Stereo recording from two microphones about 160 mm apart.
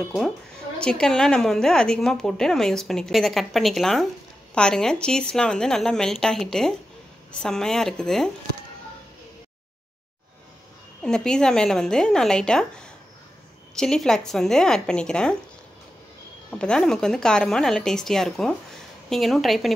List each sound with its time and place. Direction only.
0.7 s a woman's voice: 5° left (ahead or behind)
11.1 s a woman's voice: 5° left (ahead or behind)
13.7 s a woman's voice: 5° left (ahead or behind)
16.4 s a woman's voice: 5° left (ahead or behind)